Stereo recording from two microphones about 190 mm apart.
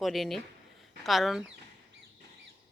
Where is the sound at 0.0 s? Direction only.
Centre (ahead or behind).